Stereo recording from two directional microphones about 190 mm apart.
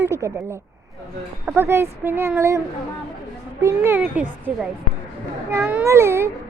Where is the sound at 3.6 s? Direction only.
10° right (ahead or behind).